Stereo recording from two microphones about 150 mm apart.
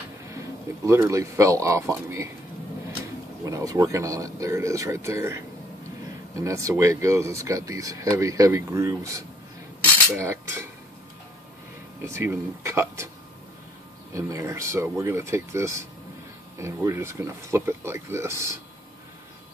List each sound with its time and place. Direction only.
0.3 s speech: 20° right (ahead or behind)
3.4 s speech: 20° right (ahead or behind)
12.1 s speech: 15° right (ahead or behind)
14.1 s speech: 20° right (ahead or behind)